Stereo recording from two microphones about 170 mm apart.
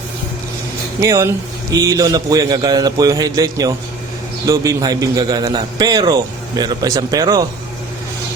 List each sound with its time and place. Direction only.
1.0 s a man's voice: 20° right (ahead or behind)